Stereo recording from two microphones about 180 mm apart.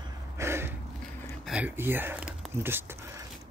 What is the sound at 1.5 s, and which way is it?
Speech, 10° right (ahead or behind).